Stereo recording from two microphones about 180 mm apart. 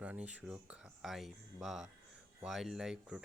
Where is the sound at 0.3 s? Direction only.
5° right (ahead or behind).